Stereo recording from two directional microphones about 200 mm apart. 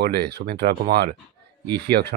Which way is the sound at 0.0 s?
55° right (ahead or behind).